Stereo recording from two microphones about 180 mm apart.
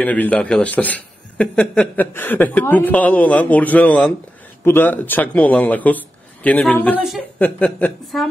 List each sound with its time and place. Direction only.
0.0 s a man's voice: 10° left (ahead or behind)